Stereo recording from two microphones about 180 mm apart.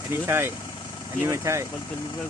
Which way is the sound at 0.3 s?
15° right (ahead or behind).